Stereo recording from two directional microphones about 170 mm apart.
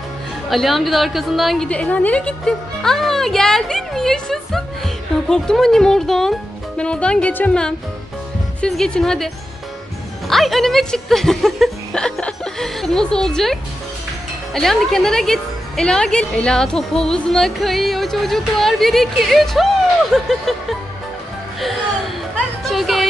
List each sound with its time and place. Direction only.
0.5 s a woman's voice: centre (ahead or behind)
10.3 s a woman's voice: centre (ahead or behind)
21.5 s music: centre (ahead or behind)